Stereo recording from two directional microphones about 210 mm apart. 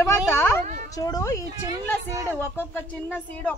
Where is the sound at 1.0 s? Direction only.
15° left (ahead or behind).